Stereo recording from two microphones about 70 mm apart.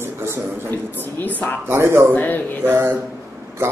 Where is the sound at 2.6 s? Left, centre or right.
Right.